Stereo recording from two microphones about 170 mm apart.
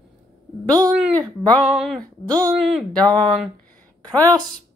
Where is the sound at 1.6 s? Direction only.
5° right (ahead or behind).